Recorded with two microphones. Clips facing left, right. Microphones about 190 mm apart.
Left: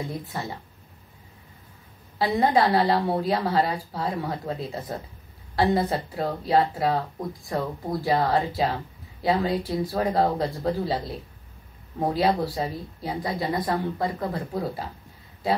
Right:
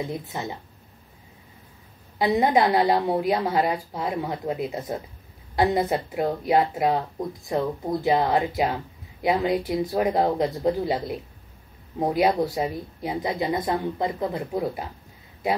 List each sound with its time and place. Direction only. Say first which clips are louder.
0.1 s speech: right 1 dB; 20° right (ahead or behind)
2.1 s speech: right 1 dB; 20° right (ahead or behind)